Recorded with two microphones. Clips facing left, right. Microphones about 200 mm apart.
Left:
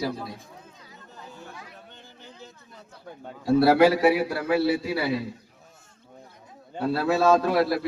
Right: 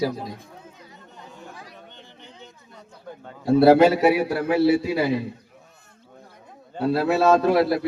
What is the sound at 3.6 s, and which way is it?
A man's voice, 25° right (ahead or behind).